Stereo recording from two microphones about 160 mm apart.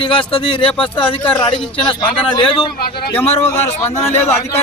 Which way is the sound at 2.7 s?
75° left (ahead or behind).